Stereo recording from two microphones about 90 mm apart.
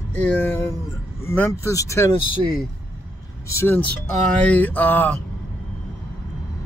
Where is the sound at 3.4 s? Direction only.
30° left (ahead or behind).